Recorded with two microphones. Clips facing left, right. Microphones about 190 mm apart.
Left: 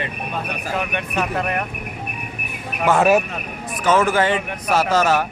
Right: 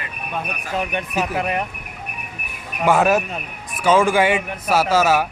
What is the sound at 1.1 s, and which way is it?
Speech, 5° right (ahead or behind).